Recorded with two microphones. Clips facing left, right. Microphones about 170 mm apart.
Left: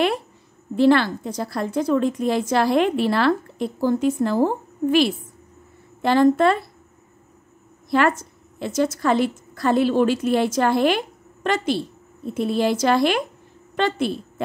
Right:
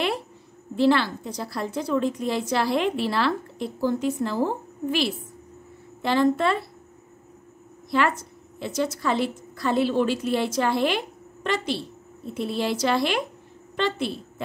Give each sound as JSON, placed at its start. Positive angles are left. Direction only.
{"t": 0.7, "sound": "a woman's voice", "side_deg": 50}
{"t": 6.0, "sound": "a woman's voice", "side_deg": 50}
{"t": 7.9, "sound": "a woman's voice", "side_deg": 45}